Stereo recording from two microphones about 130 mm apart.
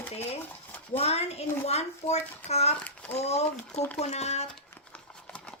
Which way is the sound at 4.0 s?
55° left (ahead or behind).